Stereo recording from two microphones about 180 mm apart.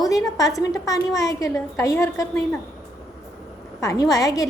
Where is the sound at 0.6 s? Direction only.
20° left (ahead or behind).